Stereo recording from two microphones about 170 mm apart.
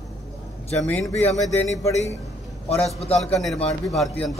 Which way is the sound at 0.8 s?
10° left (ahead or behind).